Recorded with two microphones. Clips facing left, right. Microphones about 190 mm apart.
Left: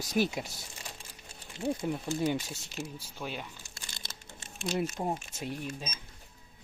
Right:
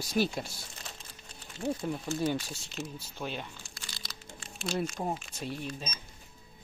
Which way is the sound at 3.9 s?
50° left (ahead or behind).